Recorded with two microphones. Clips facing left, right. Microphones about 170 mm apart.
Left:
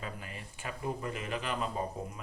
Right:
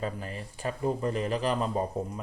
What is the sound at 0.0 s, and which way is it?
Speech, 35° right (ahead or behind).